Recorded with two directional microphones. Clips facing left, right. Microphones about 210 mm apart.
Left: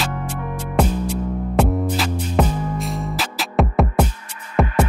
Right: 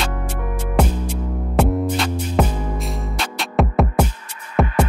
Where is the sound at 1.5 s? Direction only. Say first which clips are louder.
Right 1 dB; centre (ahead or behind).